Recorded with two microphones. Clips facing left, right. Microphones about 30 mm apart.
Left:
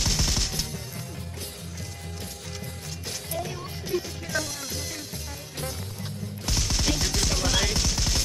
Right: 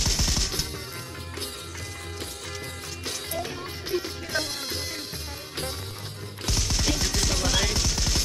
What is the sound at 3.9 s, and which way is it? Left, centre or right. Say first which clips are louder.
Music: even; right.